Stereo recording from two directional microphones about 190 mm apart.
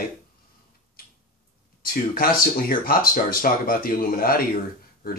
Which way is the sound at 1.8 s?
50° left (ahead or behind).